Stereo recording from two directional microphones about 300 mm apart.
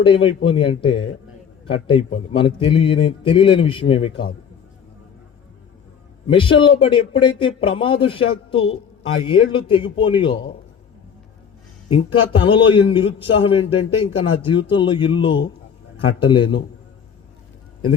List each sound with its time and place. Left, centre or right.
0.0 s a man's voice: centre
6.2 s a man's voice: centre
11.9 s a man's voice: centre